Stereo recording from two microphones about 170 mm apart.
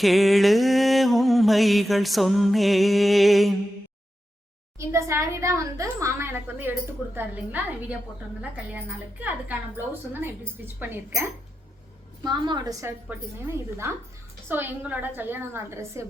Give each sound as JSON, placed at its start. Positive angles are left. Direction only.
{"t": 0.0, "sound": "a sound", "side_deg": 0}
{"t": 4.8, "sound": "a woman's voice", "side_deg": -15}
{"t": 9.2, "sound": "a woman's voice", "side_deg": -10}
{"t": 12.2, "sound": "a woman's voice", "side_deg": -25}